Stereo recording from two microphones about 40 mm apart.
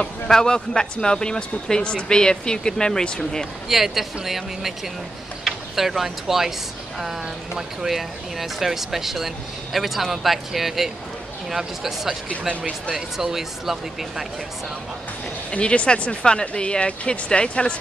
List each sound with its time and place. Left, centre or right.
0.3 s speech: centre
3.6 s speech: centre
15.5 s speech: left